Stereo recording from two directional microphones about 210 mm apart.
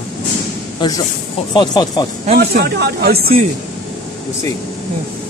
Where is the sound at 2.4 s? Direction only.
50° right (ahead or behind).